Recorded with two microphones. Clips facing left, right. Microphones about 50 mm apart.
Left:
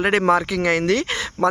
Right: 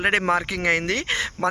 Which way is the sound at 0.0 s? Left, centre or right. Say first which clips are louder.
Left 3 dB; right.